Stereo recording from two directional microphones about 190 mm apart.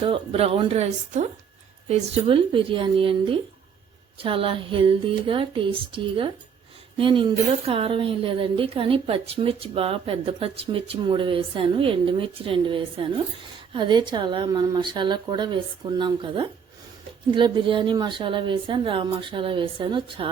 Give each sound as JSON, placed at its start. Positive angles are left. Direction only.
{"t": 0.0, "sound": "speech", "side_deg": -30}